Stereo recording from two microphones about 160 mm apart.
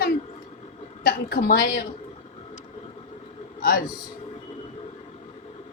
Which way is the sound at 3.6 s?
70° left (ahead or behind).